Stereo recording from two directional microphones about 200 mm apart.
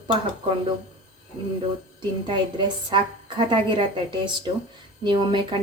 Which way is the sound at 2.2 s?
25° right (ahead or behind).